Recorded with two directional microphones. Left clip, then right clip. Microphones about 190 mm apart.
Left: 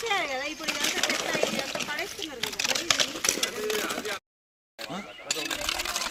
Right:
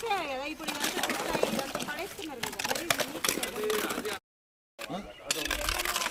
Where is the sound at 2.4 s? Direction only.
40° right (ahead or behind).